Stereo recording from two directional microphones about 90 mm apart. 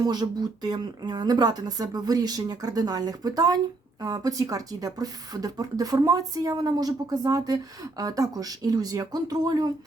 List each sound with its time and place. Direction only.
0.0 s speech: 50° right (ahead or behind)